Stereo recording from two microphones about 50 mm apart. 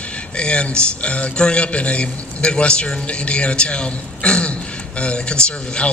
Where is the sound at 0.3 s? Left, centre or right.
Left.